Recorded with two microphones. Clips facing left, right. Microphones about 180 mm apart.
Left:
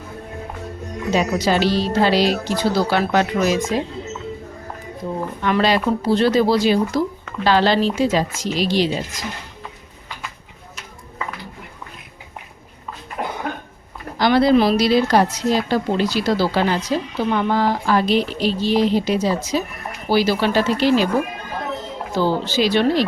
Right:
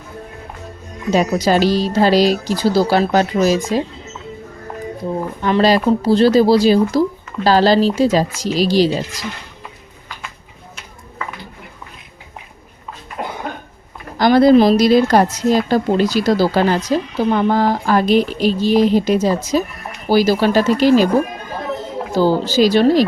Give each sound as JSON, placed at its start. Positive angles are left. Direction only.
{"t": 1.1, "sound": "speech", "side_deg": -40}
{"t": 5.4, "sound": "speech", "side_deg": -35}
{"t": 14.2, "sound": "a woman's voice", "side_deg": -45}
{"t": 22.1, "sound": "speech", "side_deg": -40}